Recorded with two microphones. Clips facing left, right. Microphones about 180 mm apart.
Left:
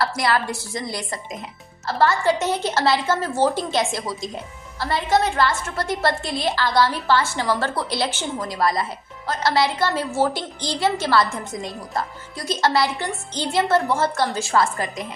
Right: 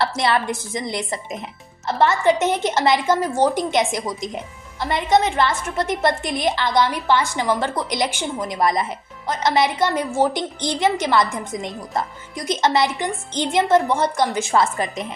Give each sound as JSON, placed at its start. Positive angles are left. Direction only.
{"t": 0.0, "sound": "a woman's voice", "side_deg": -25}